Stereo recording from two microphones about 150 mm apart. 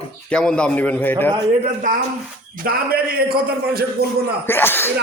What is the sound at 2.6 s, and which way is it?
A man's voice, 85° right.